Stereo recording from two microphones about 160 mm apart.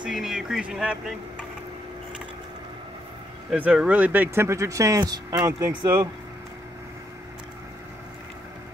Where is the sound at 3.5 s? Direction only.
5° right (ahead or behind); by 5.7 s 25° right (ahead or behind).